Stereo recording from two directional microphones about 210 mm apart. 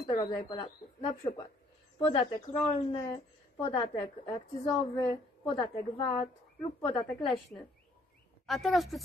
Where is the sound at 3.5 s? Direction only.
25° left (ahead or behind).